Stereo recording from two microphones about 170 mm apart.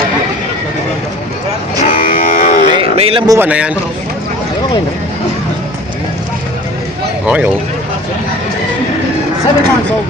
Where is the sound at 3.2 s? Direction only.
15° right (ahead or behind).